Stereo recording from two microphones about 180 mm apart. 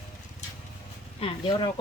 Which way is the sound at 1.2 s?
25° left (ahead or behind).